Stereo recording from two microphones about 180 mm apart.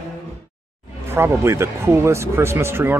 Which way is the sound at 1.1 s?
15° right (ahead or behind).